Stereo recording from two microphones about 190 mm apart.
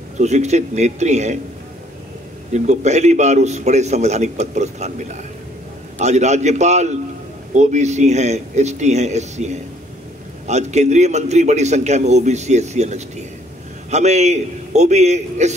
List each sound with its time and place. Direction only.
0.2 s a man's voice: 35° right (ahead or behind)
2.5 s a man's voice: 35° right (ahead or behind)